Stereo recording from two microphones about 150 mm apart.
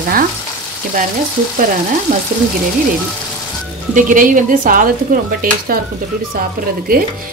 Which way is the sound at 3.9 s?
60° right (ahead or behind).